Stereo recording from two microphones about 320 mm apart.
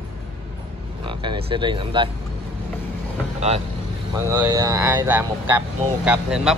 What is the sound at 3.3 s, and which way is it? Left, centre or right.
Speech, centre.